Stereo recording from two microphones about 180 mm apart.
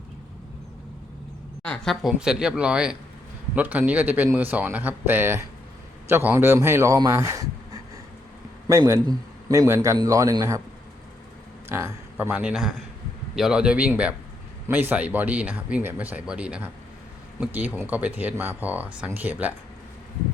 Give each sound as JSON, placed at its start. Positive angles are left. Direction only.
{"t": 1.6, "sound": "a man's voice", "side_deg": 5}
{"t": 11.7, "sound": "a man's voice", "side_deg": -15}